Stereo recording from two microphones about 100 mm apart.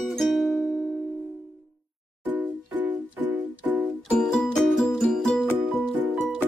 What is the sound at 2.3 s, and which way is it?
Music, 20° right (ahead or behind).